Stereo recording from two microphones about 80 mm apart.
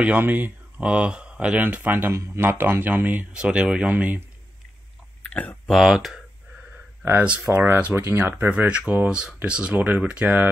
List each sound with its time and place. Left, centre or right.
0.0 s speech: right
5.3 s speech: centre
5.7 s speech: centre
7.1 s speech: centre
8.0 s speech: right